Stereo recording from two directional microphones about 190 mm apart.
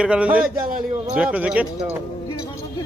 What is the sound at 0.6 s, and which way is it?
Speech, 45° right (ahead or behind).